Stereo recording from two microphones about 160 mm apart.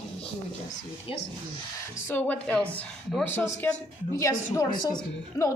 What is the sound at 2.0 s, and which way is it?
A woman's voice, 10° left (ahead or behind).